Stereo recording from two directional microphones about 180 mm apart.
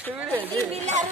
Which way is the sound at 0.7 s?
40° right (ahead or behind).